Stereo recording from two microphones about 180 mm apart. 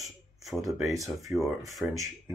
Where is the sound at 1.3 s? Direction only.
5° right (ahead or behind).